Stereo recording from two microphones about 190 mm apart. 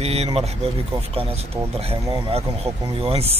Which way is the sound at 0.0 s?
30° right (ahead or behind).